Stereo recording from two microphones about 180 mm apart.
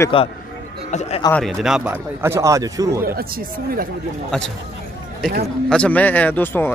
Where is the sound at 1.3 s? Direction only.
Centre (ahead or behind); by 3.0 s 20° right (ahead or behind).